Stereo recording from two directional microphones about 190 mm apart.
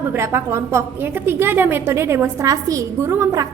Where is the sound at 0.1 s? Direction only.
10° right (ahead or behind).